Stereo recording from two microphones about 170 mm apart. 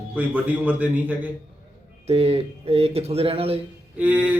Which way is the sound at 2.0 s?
35° right (ahead or behind).